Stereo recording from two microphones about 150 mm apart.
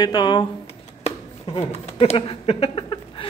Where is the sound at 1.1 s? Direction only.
40° left (ahead or behind).